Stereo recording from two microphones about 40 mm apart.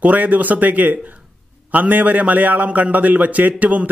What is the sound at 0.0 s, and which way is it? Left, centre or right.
A man's voice, right.